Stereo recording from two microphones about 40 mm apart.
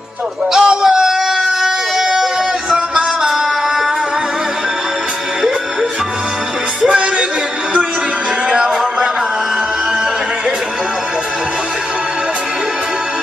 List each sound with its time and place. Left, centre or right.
0.5 s a sound: centre
2.7 s music: centre
6.9 s music: right
8.5 s music: right